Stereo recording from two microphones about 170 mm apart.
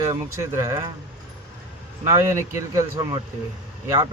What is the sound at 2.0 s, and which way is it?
Speech, 15° right (ahead or behind).